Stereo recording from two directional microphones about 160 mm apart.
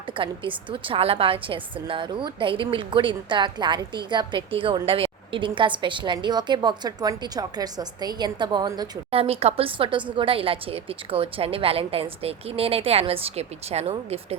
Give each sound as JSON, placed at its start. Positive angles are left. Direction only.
{"t": 0.2, "sound": "a woman's voice", "side_deg": -30}